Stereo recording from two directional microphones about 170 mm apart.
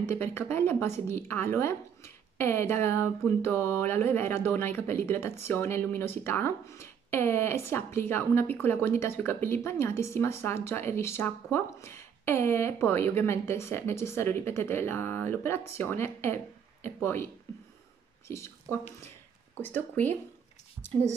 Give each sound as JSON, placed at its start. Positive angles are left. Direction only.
{"t": 0.0, "sound": "speech", "side_deg": 15}
{"t": 18.3, "sound": "speech", "side_deg": 15}